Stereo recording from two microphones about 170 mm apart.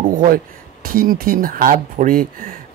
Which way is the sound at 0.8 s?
60° right (ahead or behind).